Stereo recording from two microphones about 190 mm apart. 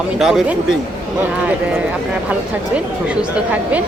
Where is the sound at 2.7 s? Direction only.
5° right (ahead or behind).